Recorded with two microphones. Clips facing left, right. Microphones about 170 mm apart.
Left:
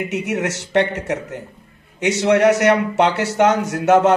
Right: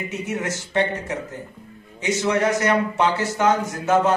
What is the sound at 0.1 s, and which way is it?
A man's voice, 75° left (ahead or behind).